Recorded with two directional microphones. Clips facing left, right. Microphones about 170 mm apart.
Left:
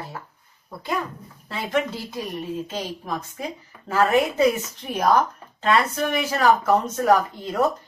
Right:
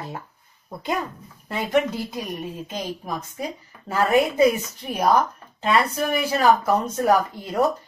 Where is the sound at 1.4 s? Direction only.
15° right (ahead or behind).